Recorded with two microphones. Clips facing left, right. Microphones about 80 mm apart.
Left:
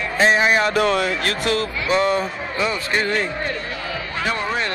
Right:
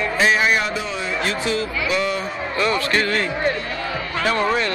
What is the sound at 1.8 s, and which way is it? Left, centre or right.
Speech, left.